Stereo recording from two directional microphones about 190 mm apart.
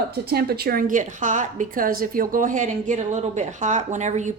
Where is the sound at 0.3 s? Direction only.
55° right (ahead or behind).